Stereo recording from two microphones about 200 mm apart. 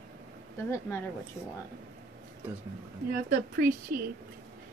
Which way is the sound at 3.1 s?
50° right (ahead or behind).